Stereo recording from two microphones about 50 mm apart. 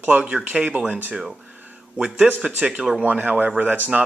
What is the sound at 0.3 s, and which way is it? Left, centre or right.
Speech, right.